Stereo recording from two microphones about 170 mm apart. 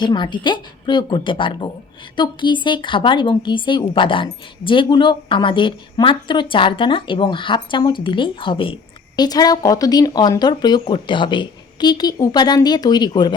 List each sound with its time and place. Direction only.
0.0 s a woman's voice: 25° left (ahead or behind)